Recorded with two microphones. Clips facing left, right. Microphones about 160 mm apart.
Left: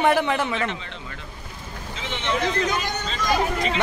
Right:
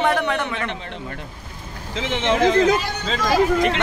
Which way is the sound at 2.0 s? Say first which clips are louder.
Right 7 dB; 90° right.